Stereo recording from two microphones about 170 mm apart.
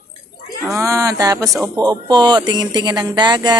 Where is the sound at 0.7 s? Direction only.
20° right (ahead or behind).